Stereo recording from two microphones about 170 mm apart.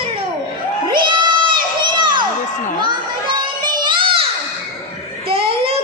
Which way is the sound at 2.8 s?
25° right (ahead or behind).